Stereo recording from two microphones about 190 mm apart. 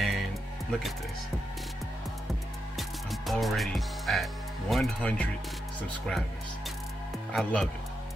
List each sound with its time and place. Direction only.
0.0 s music: centre (ahead or behind)
2.8 s speech: centre (ahead or behind)
7.3 s speech: centre (ahead or behind)